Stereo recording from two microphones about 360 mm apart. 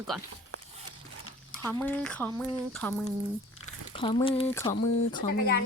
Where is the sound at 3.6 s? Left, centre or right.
Centre.